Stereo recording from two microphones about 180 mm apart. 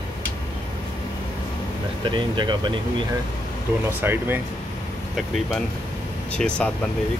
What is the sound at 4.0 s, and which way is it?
Speech, 10° right (ahead or behind).